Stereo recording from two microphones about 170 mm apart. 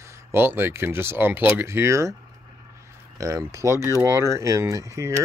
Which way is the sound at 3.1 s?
20° right (ahead or behind).